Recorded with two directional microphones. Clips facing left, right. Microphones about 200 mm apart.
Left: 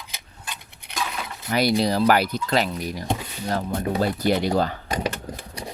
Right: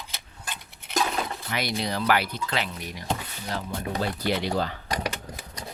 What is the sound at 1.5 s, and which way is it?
Speech, 35° left (ahead or behind).